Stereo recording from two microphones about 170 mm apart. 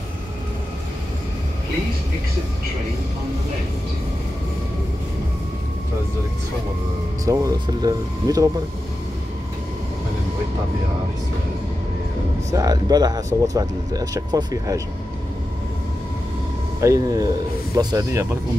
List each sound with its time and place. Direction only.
7.2 s speech: 20° right (ahead or behind)
12.4 s speech: 20° right (ahead or behind)
16.8 s speech: 20° right (ahead or behind)